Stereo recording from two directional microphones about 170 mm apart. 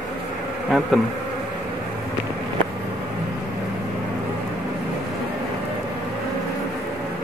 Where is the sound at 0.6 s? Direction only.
Centre (ahead or behind).